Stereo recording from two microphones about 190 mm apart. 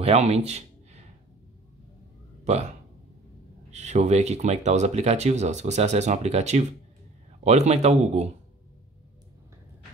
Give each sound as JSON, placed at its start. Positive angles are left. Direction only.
{"t": 0.0, "sound": "a sound", "side_deg": -35}
{"t": 2.4, "sound": "speech", "side_deg": -35}
{"t": 3.7, "sound": "speech", "side_deg": -35}